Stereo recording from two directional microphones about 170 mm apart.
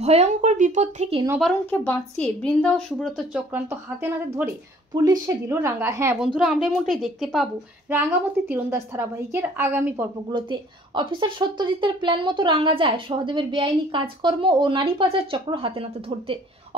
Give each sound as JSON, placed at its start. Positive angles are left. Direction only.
{"t": 0.0, "sound": "speech", "side_deg": -40}
{"t": 1.4, "sound": "speech", "side_deg": 10}
{"t": 4.9, "sound": "a woman's voice", "side_deg": -20}
{"t": 6.2, "sound": "a woman's voice", "side_deg": -5}
{"t": 10.3, "sound": "a woman's voice", "side_deg": -25}